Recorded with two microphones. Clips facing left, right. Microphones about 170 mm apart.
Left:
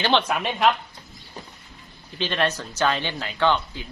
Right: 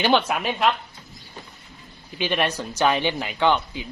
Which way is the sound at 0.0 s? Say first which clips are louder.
Right 2 dB; 10° right (ahead or behind).